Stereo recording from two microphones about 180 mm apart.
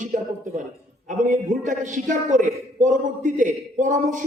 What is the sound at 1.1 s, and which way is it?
A man's voice, 45° right (ahead or behind).